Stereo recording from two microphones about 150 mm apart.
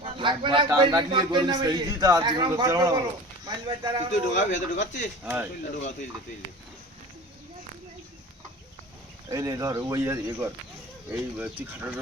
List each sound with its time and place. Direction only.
0.0 s a man's voice: 35° right (ahead or behind)
0.7 s a man's voice: 20° right (ahead or behind)
4.3 s speech: 55° left (ahead or behind)
5.2 s speech: 10° right (ahead or behind)
9.3 s a man's voice: 20° right (ahead or behind)